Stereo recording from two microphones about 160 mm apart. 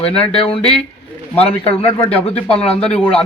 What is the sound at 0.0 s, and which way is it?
Speech, 35° left (ahead or behind).